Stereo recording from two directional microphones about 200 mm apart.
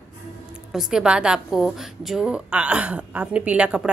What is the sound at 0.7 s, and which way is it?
A woman's voice, 5° right (ahead or behind).